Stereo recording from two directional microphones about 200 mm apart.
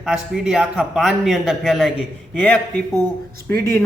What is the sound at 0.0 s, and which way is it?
A man's voice, 5° right (ahead or behind).